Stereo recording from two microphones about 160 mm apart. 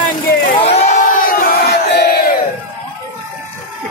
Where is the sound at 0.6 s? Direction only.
40° left (ahead or behind); by 2.3 s 85° left.